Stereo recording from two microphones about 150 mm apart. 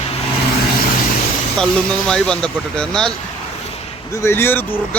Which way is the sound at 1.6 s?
5° left (ahead or behind).